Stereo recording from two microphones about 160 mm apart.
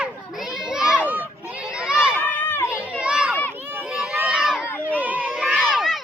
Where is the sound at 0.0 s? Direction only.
5° right (ahead or behind).